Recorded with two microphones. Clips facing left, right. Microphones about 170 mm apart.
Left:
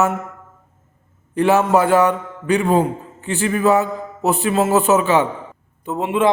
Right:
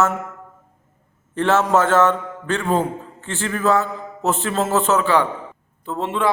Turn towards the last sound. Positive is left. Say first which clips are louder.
# left 4 dB
turn(degrees=15)  # may be behind; listen again after turning